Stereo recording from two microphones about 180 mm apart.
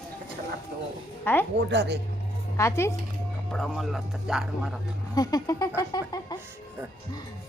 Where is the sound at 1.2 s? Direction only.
10° left (ahead or behind).